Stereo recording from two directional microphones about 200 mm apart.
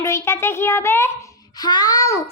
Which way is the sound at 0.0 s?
15° left (ahead or behind).